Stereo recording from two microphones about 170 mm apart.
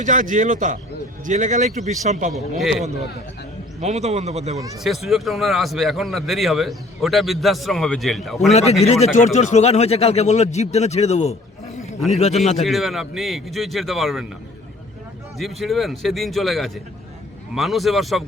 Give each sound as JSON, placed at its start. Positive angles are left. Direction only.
{"t": 0.0, "sound": "a man's voice", "side_deg": -50}
{"t": 2.3, "sound": "speech", "side_deg": 0}
{"t": 3.8, "sound": "speech", "side_deg": -40}
{"t": 4.8, "sound": "speech", "side_deg": 0}
{"t": 8.8, "sound": "speech", "side_deg": 40}
{"t": 12.6, "sound": "speech", "side_deg": 0}
{"t": 15.4, "sound": "speech", "side_deg": 0}